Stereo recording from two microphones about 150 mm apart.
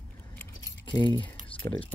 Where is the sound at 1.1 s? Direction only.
35° left (ahead or behind).